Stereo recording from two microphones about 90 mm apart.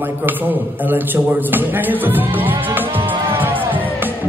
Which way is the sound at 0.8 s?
20° right (ahead or behind).